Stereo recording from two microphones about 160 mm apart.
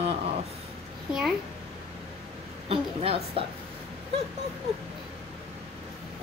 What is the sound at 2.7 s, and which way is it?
Speech, 35° right (ahead or behind).